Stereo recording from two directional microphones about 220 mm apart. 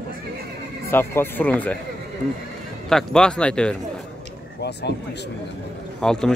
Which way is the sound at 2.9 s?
Centre (ahead or behind).